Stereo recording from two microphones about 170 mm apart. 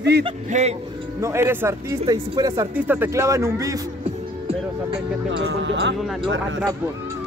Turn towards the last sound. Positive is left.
turn(degrees=-90)